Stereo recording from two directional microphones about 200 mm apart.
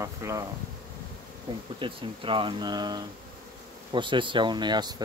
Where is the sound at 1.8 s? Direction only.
25° right (ahead or behind).